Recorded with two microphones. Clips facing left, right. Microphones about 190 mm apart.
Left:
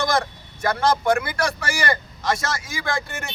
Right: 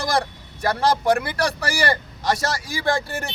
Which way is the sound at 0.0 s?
35° right (ahead or behind).